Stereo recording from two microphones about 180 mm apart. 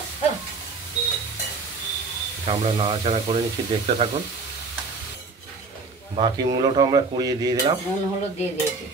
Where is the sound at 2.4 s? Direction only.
30° right (ahead or behind).